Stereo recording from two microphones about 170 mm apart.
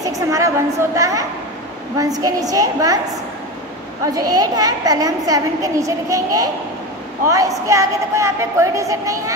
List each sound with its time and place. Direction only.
0.0 s a woman's voice: 20° right (ahead or behind)
4.0 s a woman's voice: 20° right (ahead or behind)